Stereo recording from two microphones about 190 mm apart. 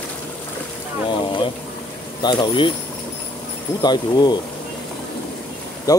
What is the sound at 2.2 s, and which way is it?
Speech, 25° left (ahead or behind).